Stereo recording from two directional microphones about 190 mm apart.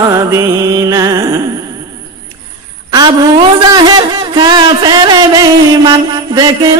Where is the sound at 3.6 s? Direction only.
25° right (ahead or behind).